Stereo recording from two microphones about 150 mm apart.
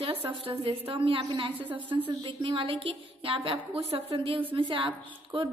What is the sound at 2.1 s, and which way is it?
A woman's voice, 35° right (ahead or behind).